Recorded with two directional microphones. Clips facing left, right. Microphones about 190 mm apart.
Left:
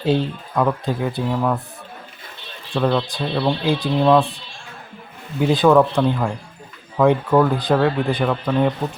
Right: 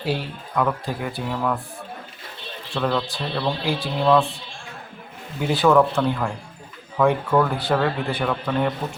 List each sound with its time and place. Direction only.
0.0 s speech: 25° left (ahead or behind)
2.7 s speech: 15° left (ahead or behind)
5.5 s speech: 15° left (ahead or behind)